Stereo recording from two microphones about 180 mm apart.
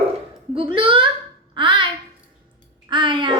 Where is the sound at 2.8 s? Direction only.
25° right (ahead or behind).